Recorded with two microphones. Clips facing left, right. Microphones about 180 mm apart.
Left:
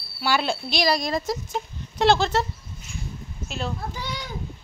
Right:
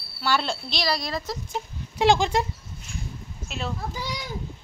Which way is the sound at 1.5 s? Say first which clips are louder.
Left 2 dB; 10° right (ahead or behind).